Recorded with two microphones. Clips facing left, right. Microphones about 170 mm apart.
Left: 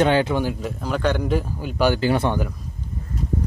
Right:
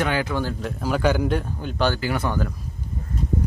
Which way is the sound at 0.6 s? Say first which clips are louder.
Right 1 dB; centre (ahead or behind).